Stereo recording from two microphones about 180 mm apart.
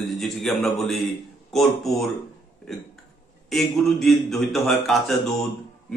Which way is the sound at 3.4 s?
Centre (ahead or behind).